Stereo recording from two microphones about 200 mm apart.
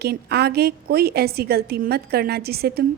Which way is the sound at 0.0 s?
55° right (ahead or behind).